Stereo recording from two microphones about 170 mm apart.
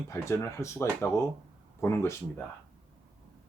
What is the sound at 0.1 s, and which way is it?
Speech, 15° left (ahead or behind).